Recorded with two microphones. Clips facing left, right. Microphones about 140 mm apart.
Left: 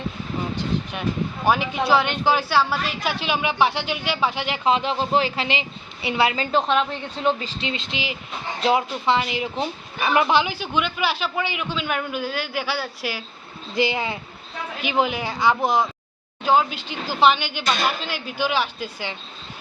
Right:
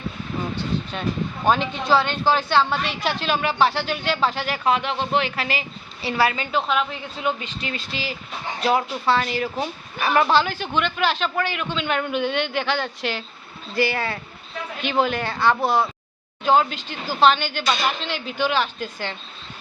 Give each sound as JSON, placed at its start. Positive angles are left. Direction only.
{"t": 0.5, "sound": "a woman's voice", "side_deg": 15}
{"t": 6.3, "sound": "a woman's voice", "side_deg": 35}
{"t": 7.7, "sound": "a woman's voice", "side_deg": 20}
{"t": 13.7, "sound": "a woman's voice", "side_deg": 20}